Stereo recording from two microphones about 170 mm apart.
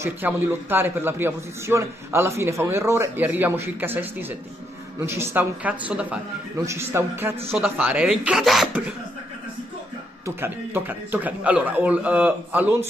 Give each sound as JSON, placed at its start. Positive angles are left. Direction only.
{"t": 0.0, "sound": "a man's voice", "side_deg": -15}
{"t": 10.2, "sound": "a man's voice", "side_deg": -15}